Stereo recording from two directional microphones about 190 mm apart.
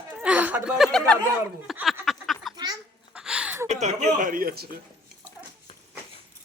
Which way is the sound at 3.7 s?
35° right (ahead or behind).